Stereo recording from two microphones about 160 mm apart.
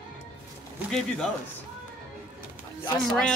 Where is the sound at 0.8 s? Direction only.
5° left (ahead or behind).